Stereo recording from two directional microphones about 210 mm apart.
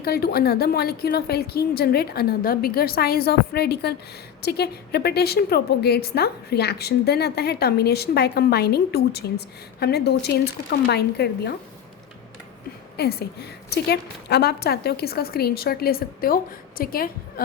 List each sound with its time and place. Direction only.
0.0 s a woman's voice: 50° left (ahead or behind)
13.0 s a woman's voice: 50° left (ahead or behind)